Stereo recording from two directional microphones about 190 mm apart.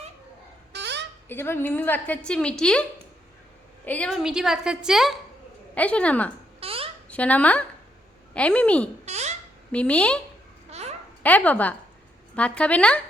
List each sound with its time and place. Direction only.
0.7 s a sound: 65° right (ahead or behind)
1.3 s a woman's voice: 10° left (ahead or behind)
3.8 s a woman's voice: 5° left (ahead or behind)
6.6 s a sound: 30° right (ahead or behind)
7.1 s a woman's voice: 5° left (ahead or behind)
9.0 s babbling: 35° right (ahead or behind)
9.7 s a woman's voice: 5° left (ahead or behind)
10.7 s babbling: 35° right (ahead or behind)
11.2 s a woman's voice: 10° left (ahead or behind)